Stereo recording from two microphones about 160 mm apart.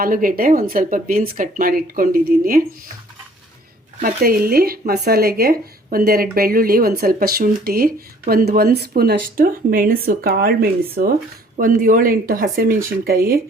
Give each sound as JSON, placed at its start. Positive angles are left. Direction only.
{"t": 0.0, "sound": "speech", "side_deg": -60}
{"t": 4.0, "sound": "a woman's voice", "side_deg": -65}
{"t": 9.0, "sound": "speech", "side_deg": -70}
{"t": 11.5, "sound": "speech", "side_deg": -60}